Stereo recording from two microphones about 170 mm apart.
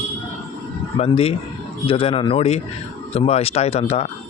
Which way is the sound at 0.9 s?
35° left (ahead or behind).